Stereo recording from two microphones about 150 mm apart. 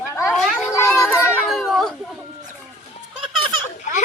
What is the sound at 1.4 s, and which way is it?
Speech, centre (ahead or behind).